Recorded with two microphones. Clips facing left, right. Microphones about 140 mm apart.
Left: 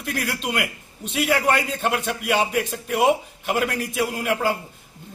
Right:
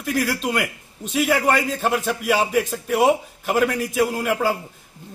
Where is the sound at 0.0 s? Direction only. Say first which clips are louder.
Right 5 dB; centre (ahead or behind).